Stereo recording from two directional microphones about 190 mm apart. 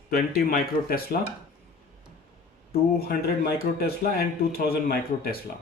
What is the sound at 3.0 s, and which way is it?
Speech, 55° left (ahead or behind).